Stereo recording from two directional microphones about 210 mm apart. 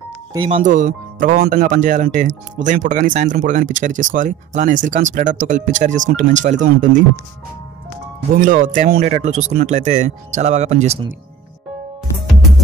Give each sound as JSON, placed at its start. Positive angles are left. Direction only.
{"t": 0.3, "sound": "speech", "side_deg": -25}
{"t": 0.6, "sound": "speech", "side_deg": -40}
{"t": 8.4, "sound": "speech", "side_deg": -40}